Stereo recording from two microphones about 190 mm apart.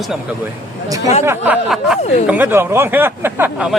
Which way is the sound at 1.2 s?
10° right (ahead or behind).